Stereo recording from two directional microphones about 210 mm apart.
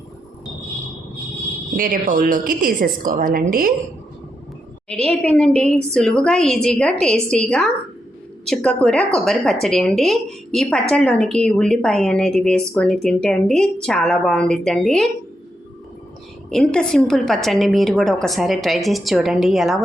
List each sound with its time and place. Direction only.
1.7 s a woman's voice: 40° right (ahead or behind)
4.9 s a woman's voice: 5° left (ahead or behind)
16.5 s a woman's voice: 5° left (ahead or behind)